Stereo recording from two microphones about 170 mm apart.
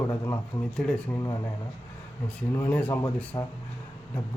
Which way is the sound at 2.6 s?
10° left (ahead or behind).